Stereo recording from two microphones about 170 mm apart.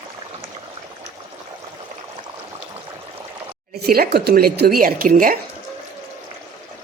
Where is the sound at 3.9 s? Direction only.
65° right (ahead or behind).